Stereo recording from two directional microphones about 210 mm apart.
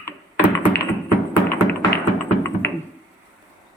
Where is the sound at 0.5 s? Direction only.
10° left (ahead or behind).